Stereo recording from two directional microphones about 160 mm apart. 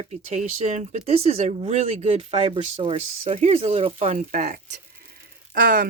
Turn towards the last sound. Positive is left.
turn(degrees=-70)  # may be behind; listen again after turning